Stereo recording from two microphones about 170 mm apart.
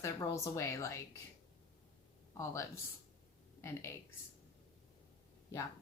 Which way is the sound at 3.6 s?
15° left (ahead or behind).